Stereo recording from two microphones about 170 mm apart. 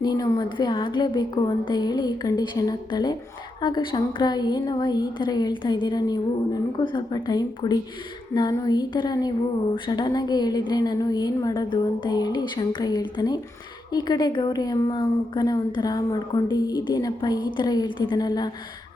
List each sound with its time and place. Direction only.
0.0 s a woman's voice: 25° left (ahead or behind)